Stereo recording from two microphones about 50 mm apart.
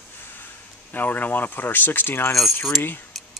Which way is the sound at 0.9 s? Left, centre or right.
Left.